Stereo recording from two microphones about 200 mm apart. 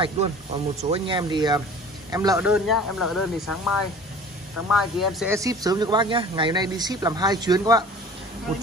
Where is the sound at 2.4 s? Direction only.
5° right (ahead or behind).